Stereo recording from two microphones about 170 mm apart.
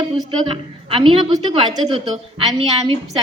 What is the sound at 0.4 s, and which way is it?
A woman's voice, 30° right (ahead or behind).